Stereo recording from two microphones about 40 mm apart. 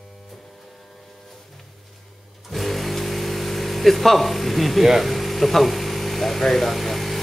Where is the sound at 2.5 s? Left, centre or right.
Centre.